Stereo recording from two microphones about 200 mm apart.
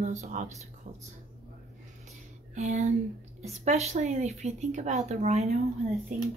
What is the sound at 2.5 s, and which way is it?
A woman's voice, 35° right (ahead or behind).